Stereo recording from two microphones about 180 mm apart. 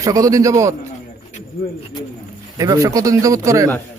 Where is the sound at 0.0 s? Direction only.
20° right (ahead or behind).